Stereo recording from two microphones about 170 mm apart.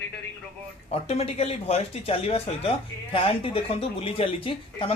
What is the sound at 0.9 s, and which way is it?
Speech, 35° left (ahead or behind).